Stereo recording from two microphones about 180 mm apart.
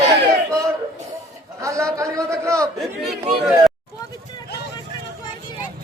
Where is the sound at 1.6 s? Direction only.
15° right (ahead or behind).